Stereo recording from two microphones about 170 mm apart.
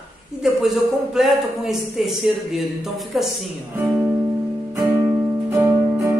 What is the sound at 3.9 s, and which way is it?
Music, 15° right (ahead or behind).